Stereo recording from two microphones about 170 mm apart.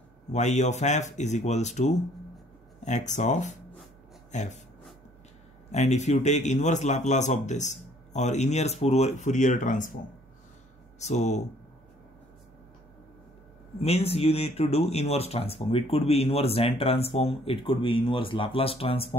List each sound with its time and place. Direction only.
0.3 s a man's voice: 45° left (ahead or behind)
5.7 s a man's voice: 40° left (ahead or behind)
11.0 s speech: 40° left (ahead or behind)
13.7 s speech: 35° left (ahead or behind)